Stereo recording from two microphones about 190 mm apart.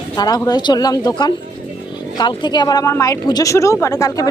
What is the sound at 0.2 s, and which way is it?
A woman's voice, 20° left (ahead or behind).